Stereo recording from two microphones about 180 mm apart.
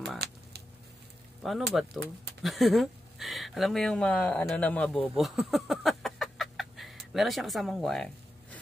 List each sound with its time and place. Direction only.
0.2 s speech: 65° right (ahead or behind)
1.4 s speech: centre (ahead or behind)